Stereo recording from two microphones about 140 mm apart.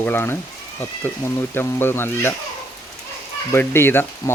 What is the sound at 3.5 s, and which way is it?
Speech, 15° left (ahead or behind).